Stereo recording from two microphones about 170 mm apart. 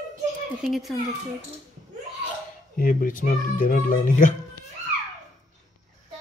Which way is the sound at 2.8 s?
55° left (ahead or behind).